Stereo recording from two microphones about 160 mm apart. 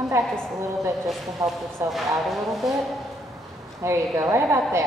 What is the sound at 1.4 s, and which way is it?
Speech, 20° right (ahead or behind).